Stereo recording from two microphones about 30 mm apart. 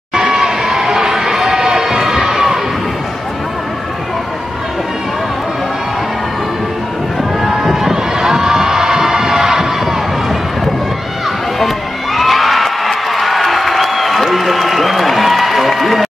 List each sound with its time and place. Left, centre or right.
0.1 s crowd: right
7.4 s a sound: centre
7.9 s cheering: centre
11.6 s crowd: centre